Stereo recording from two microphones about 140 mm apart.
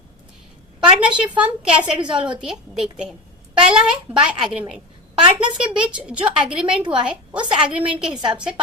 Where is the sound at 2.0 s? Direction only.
35° right (ahead or behind).